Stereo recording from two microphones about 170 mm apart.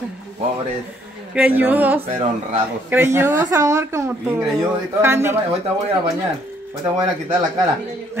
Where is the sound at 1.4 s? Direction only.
10° right (ahead or behind).